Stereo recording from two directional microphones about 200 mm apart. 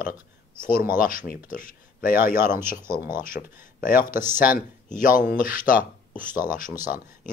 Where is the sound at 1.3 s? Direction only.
45° left (ahead or behind).